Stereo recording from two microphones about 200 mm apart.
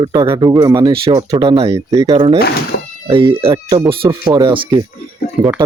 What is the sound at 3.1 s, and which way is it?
Speech, 25° right (ahead or behind).